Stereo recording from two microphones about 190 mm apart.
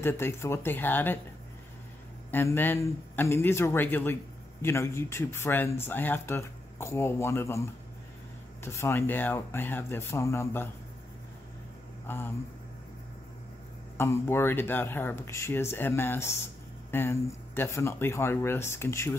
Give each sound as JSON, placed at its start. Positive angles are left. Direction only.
{"t": 0.0, "sound": "speech", "side_deg": 15}
{"t": 2.3, "sound": "speech", "side_deg": 10}
{"t": 12.1, "sound": "speech", "side_deg": 10}
{"t": 13.9, "sound": "speech", "side_deg": 15}